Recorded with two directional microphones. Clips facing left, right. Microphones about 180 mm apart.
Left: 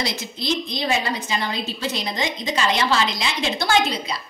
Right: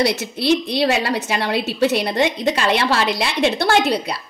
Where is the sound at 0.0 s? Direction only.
70° right (ahead or behind).